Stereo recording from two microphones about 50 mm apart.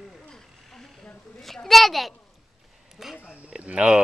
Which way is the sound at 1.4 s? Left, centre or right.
Centre.